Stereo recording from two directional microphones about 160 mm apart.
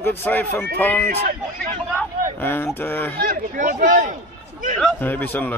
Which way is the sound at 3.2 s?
60° right (ahead or behind).